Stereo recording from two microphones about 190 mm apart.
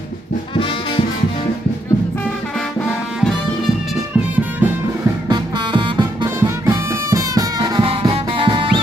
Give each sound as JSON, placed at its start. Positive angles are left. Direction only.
{"t": 5.3, "sound": "music", "side_deg": -25}